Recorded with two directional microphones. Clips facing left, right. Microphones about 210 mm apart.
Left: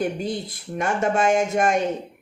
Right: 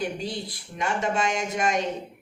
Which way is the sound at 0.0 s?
50° left (ahead or behind).